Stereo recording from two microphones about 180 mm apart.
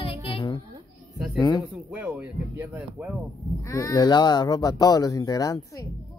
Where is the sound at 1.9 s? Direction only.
10° right (ahead or behind).